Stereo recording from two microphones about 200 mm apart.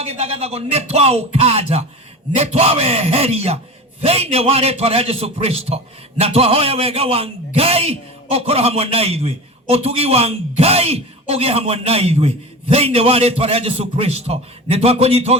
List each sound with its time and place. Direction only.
0.0 s a man's voice: 30° right (ahead or behind)